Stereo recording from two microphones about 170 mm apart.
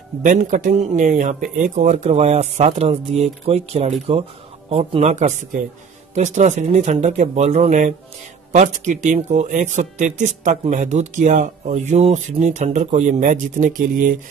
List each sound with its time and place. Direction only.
0.2 s speech: 50° right (ahead or behind)